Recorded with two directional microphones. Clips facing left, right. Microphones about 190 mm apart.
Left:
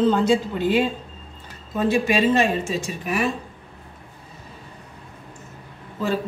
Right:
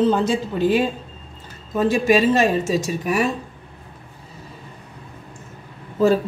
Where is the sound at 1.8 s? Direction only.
45° right (ahead or behind).